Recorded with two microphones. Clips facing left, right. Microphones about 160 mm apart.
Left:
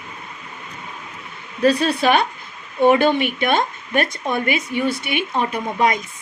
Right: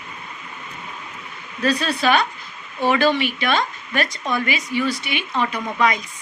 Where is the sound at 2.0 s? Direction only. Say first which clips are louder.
Right 1 dB; 55° left (ahead or behind).